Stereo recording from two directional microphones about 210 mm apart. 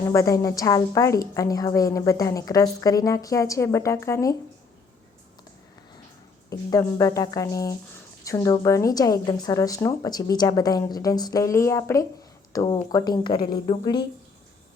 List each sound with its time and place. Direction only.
0.1 s a woman's voice: 15° left (ahead or behind)
6.5 s a woman's voice: 15° left (ahead or behind)